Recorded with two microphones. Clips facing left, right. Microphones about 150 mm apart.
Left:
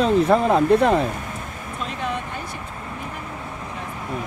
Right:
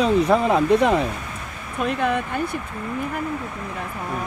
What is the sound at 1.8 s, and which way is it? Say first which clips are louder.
Speech: right 6 dB; 60° right (ahead or behind).